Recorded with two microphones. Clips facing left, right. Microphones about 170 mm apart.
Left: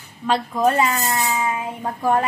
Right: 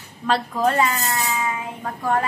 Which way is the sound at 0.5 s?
20° left (ahead or behind).